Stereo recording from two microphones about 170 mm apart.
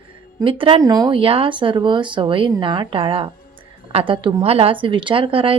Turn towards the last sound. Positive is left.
turn(degrees=-30)  # may be behind; listen again after turning